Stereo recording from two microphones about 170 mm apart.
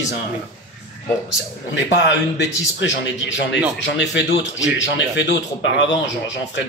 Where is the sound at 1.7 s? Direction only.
90° left.